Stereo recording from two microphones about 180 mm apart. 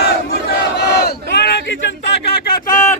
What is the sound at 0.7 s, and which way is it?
Crowd, 65° left (ahead or behind).